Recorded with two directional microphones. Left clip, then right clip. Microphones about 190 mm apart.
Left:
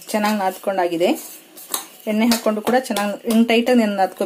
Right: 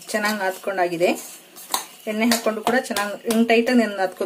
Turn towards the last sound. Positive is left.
turn(degrees=35)  # may be behind; listen again after turning